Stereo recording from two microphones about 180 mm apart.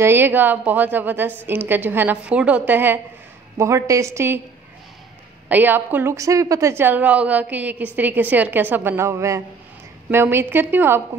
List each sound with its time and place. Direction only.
0.0 s a woman's voice: 10° right (ahead or behind)
5.5 s a woman's voice: 10° right (ahead or behind)